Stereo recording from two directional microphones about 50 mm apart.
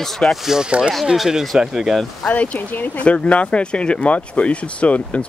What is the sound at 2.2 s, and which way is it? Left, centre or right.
Speech, left.